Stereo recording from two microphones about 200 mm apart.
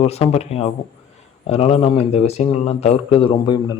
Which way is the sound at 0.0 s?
30° left (ahead or behind).